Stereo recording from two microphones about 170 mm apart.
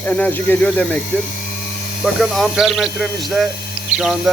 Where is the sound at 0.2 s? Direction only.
10° left (ahead or behind).